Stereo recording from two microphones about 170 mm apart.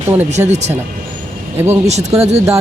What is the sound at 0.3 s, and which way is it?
Speech, 40° right (ahead or behind).